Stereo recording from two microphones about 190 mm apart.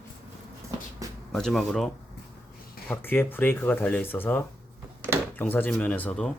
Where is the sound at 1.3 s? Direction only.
Centre (ahead or behind).